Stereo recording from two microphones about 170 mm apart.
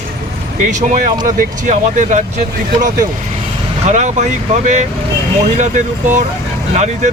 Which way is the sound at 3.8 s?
45° right (ahead or behind).